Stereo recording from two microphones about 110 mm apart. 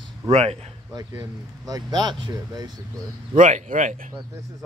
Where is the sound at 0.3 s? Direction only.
80° right.